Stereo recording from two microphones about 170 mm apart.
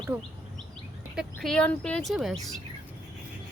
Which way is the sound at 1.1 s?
Centre (ahead or behind).